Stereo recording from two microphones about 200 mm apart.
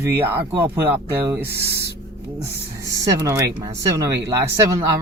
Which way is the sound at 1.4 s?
55° right (ahead or behind).